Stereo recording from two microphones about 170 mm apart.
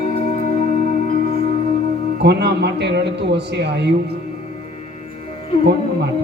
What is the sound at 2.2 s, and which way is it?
A man's voice, 80° right.